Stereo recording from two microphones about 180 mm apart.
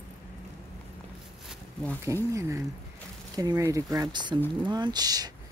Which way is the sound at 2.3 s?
15° right (ahead or behind).